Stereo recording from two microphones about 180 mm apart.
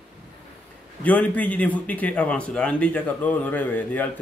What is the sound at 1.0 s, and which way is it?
A man's voice, 10° left (ahead or behind).